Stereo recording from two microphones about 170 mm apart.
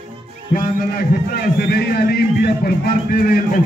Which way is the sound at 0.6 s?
55° left (ahead or behind).